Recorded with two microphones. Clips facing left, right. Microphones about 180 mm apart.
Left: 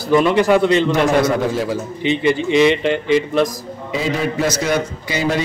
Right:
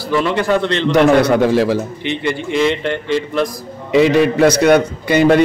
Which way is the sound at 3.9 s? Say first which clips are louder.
Right 9 dB; 70° right (ahead or behind).